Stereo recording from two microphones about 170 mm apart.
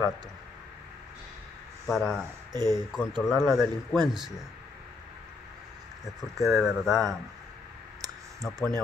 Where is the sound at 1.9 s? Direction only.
Centre (ahead or behind).